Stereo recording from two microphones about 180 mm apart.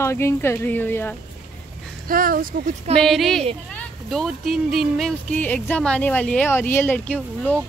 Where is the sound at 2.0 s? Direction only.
50° right (ahead or behind).